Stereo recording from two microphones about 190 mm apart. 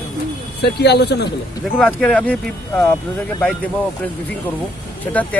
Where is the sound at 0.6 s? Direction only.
60° left (ahead or behind).